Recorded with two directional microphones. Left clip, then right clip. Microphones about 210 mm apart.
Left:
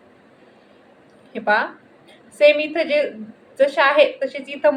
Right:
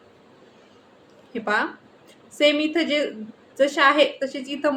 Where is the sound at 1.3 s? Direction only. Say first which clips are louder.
Left 4 dB; 15° right (ahead or behind).